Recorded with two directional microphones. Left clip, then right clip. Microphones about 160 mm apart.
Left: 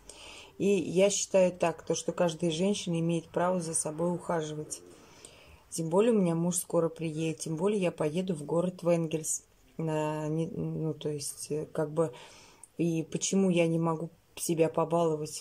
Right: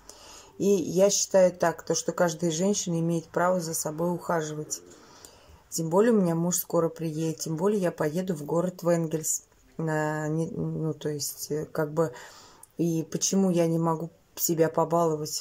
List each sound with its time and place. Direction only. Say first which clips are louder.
0.6 s speech: right 3 dB; 10° left (ahead or behind)
5.8 s speech: right 3 dB; 5° left (ahead or behind)